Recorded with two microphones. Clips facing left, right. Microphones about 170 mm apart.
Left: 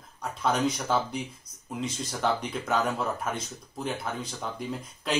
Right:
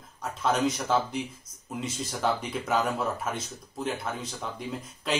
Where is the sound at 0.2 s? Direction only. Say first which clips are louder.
Even; centre (ahead or behind).